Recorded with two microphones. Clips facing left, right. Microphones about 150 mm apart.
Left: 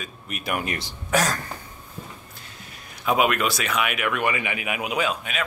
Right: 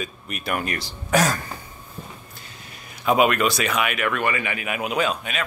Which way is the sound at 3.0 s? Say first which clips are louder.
Right 3 dB; centre (ahead or behind).